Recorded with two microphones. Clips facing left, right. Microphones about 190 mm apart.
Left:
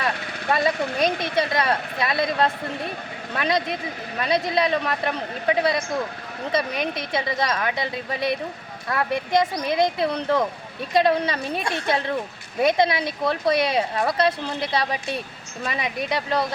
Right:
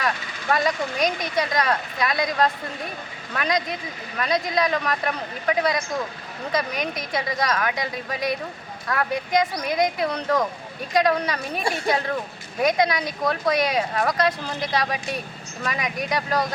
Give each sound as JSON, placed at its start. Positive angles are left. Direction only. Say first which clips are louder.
{"t": 0.7, "sound": "speech", "louder": "left 2 dB", "side_deg": 60}
{"t": 1.4, "sound": "a woman's voice", "louder": "even", "side_deg": 30}
{"t": 12.6, "sound": "a woman's voice", "louder": "left 1 dB", "side_deg": 25}